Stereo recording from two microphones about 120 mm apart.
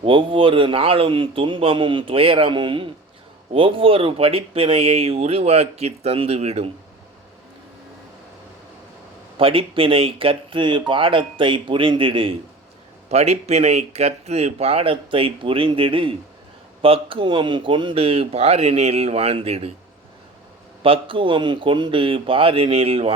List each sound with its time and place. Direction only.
0.0 s speech: 45° right (ahead or behind)
9.4 s speech: 50° right (ahead or behind)
13.1 s speech: 60° right (ahead or behind)
20.8 s speech: 45° right (ahead or behind)